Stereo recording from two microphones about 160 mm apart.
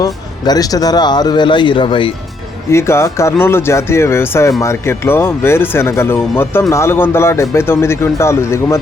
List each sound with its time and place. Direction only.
0.0 s speech: 25° left (ahead or behind)
2.6 s speech: 15° left (ahead or behind)